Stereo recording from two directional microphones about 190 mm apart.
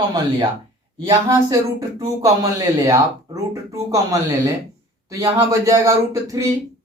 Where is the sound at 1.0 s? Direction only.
20° right (ahead or behind).